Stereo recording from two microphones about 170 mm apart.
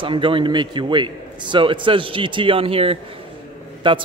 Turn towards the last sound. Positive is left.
turn(degrees=-30)  # may be behind; listen again after turning